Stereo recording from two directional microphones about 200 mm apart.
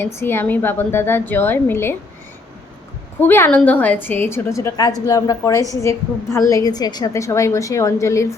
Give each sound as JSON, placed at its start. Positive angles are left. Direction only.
{"t": 0.0, "sound": "a woman's voice", "side_deg": 10}
{"t": 3.2, "sound": "a woman's voice", "side_deg": 10}